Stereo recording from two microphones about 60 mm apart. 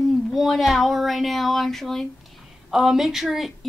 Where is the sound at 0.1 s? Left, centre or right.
Centre.